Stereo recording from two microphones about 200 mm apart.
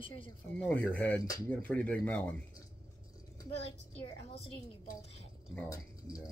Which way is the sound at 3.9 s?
30° left (ahead or behind).